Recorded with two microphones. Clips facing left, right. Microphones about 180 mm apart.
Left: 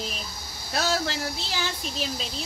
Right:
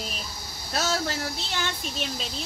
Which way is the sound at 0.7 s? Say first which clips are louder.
Left 1 dB; centre (ahead or behind).